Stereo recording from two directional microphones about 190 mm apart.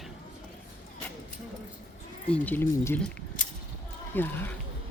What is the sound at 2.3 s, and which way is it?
Speech, 10° left (ahead or behind).